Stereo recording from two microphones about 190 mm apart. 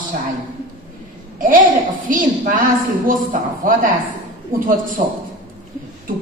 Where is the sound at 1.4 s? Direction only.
45° right (ahead or behind).